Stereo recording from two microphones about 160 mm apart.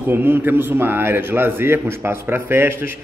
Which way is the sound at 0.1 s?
15° right (ahead or behind).